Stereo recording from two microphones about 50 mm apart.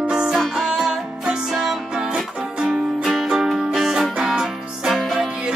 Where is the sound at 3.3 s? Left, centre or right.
Centre.